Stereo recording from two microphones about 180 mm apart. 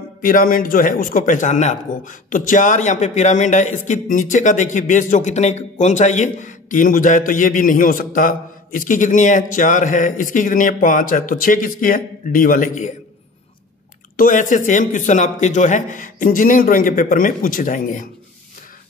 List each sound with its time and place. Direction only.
0.2 s a man's voice: 50° left (ahead or behind)
14.1 s a man's voice: 45° left (ahead or behind)